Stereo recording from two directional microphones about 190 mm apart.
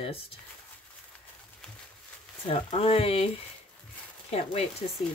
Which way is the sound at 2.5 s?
30° left (ahead or behind).